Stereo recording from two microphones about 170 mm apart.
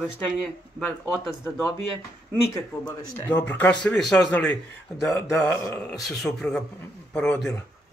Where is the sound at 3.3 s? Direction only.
10° left (ahead or behind).